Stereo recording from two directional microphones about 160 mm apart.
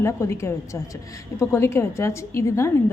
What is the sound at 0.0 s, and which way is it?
A woman's voice, 15° left (ahead or behind).